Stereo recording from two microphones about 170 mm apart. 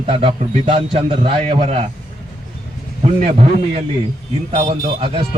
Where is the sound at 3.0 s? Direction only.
35° right (ahead or behind).